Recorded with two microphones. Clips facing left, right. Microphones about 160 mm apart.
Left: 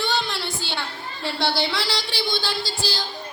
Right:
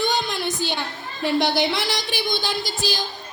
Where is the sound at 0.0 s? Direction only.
15° right (ahead or behind).